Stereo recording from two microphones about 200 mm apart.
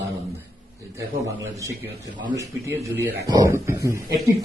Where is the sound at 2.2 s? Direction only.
15° right (ahead or behind).